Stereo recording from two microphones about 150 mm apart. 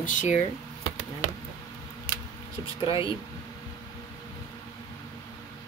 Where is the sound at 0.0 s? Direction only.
60° left (ahead or behind).